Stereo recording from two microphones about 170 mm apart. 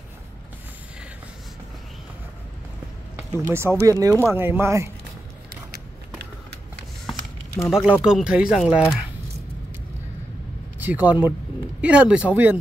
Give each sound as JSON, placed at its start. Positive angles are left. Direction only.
{"t": 3.2, "sound": "speech", "side_deg": -15}
{"t": 7.6, "sound": "speech", "side_deg": -5}
{"t": 10.8, "sound": "speech", "side_deg": -10}